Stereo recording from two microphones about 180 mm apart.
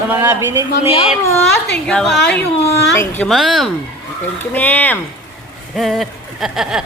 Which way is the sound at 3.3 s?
Centre (ahead or behind).